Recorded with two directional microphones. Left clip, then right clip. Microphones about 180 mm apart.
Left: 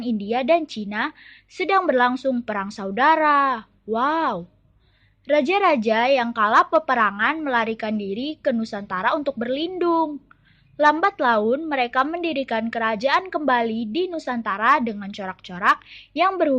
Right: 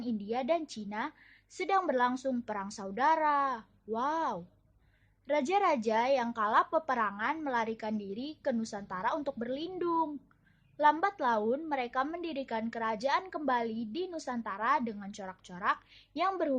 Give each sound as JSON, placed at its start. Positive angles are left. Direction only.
{"t": 0.0, "sound": "a woman's voice", "side_deg": 15}